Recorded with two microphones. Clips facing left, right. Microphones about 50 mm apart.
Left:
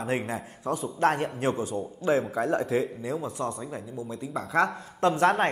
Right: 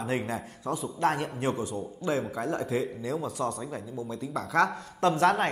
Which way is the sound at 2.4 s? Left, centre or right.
Left.